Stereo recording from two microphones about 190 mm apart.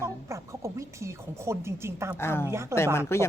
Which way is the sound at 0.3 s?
15° right (ahead or behind).